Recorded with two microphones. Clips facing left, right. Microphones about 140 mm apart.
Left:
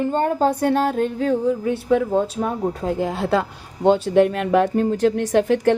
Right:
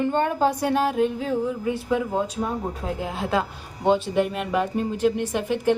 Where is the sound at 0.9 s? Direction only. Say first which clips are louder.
Left 2 dB; 5° right (ahead or behind).